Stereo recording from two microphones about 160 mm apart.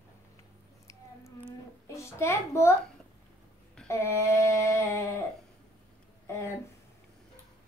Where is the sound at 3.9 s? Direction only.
15° left (ahead or behind).